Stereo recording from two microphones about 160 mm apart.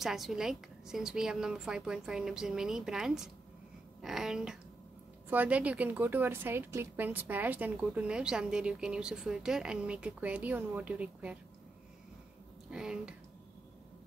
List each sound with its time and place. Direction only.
0.0 s a woman's voice: centre (ahead or behind)
12.6 s speech: 5° right (ahead or behind)